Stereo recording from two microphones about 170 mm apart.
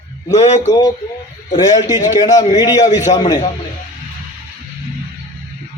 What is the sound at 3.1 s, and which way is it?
Speech, 25° left (ahead or behind).